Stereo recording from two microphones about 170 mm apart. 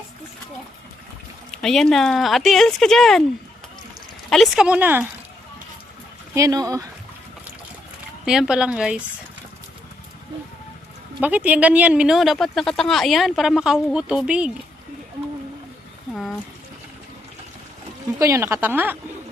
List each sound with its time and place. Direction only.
1.5 s speech: 5° left (ahead or behind)
4.3 s speech: centre (ahead or behind)
6.3 s speech: 20° right (ahead or behind)
8.2 s speech: 5° right (ahead or behind)
11.2 s speech: 10° right (ahead or behind)
16.1 s a sound: centre (ahead or behind)
18.2 s speech: 15° right (ahead or behind)